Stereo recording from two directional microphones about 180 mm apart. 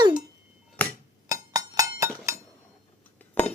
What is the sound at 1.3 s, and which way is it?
Chink, 20° right (ahead or behind).